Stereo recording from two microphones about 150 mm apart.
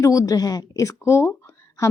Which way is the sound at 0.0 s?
25° left (ahead or behind).